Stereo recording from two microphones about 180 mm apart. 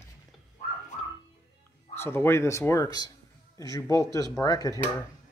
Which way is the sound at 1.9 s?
15° left (ahead or behind).